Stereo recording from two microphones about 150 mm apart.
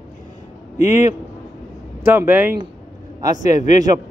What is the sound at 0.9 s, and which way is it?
A man's voice, 20° right (ahead or behind).